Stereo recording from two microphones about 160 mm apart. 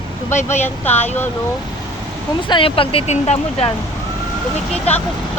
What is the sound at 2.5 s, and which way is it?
Speech, 35° left (ahead or behind).